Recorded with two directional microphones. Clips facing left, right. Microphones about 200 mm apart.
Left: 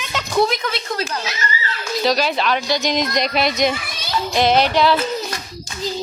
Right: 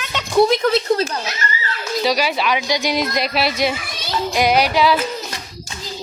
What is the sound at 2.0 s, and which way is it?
Speech, 10° right (ahead or behind).